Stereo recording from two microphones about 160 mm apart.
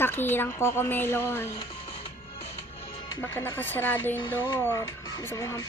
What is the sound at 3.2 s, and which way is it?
Speech, 15° left (ahead or behind).